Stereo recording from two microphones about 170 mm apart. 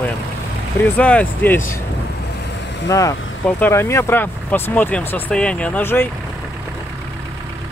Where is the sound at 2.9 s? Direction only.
20° left (ahead or behind).